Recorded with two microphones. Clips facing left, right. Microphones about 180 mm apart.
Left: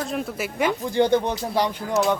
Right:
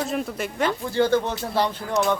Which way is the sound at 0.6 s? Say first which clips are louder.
Left 1 dB; 15° left (ahead or behind).